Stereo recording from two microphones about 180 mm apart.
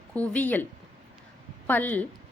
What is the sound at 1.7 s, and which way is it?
Speech, 10° left (ahead or behind).